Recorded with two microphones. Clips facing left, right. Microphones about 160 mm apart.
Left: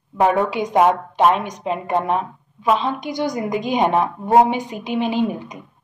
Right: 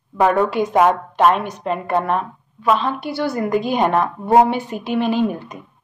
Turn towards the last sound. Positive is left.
turn(degrees=15)  # may be behind; listen again after turning